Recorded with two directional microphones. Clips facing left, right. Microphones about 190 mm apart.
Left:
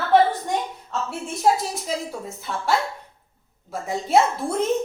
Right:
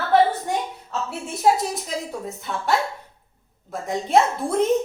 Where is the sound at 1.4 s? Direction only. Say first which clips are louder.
Right 1 dB; centre (ahead or behind).